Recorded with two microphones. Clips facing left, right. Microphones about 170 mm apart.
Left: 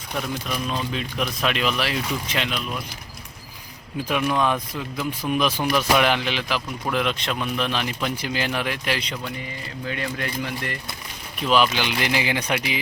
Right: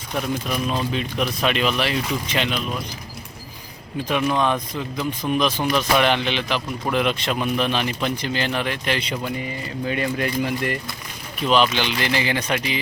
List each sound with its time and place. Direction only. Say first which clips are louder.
0.9 s speech: right 3 dB; centre (ahead or behind)
4.1 s speech: right 1 dB; 5° left (ahead or behind)
9.8 s speech: right 5 dB; 20° right (ahead or behind)
11.4 s speech: right 1 dB; 5° left (ahead or behind)